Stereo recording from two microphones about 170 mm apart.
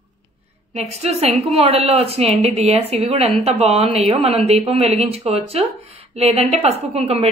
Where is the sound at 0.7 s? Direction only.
40° right (ahead or behind).